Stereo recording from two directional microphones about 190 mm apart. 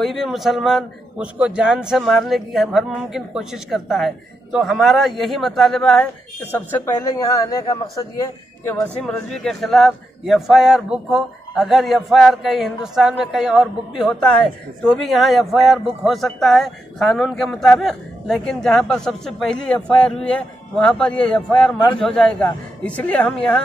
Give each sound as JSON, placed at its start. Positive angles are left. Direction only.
{"t": 0.0, "sound": "a man's voice", "side_deg": 0}
{"t": 8.6, "sound": "a man's voice", "side_deg": 5}